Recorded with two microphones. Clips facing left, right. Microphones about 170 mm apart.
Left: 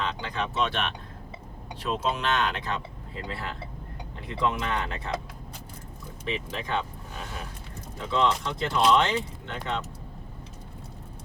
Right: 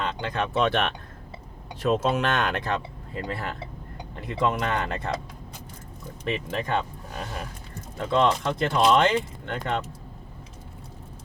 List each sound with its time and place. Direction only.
0.2 s speech: 55° right (ahead or behind)
6.2 s speech: 50° right (ahead or behind)
8.1 s speech: 55° right (ahead or behind)